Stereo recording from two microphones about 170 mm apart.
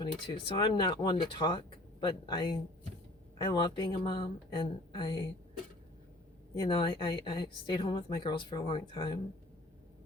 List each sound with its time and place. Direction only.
0.0 s a woman's voice: 30° left (ahead or behind)
6.5 s a woman's voice: 25° left (ahead or behind)